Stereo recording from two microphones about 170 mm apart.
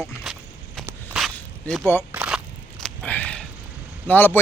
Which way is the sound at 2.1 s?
5° right (ahead or behind).